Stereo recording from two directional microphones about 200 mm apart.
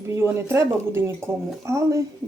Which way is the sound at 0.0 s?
15° right (ahead or behind).